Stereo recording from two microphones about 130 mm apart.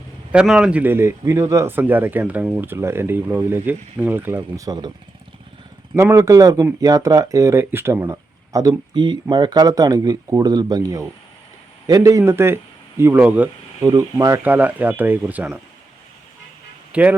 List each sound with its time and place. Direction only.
0.4 s speech: 5° right (ahead or behind); by 4.9 s 30° right (ahead or behind)
6.0 s speech: 20° right (ahead or behind)
13.8 s speech: 25° right (ahead or behind); by 15.6 s 10° right (ahead or behind)
16.9 s a man's voice: 10° right (ahead or behind)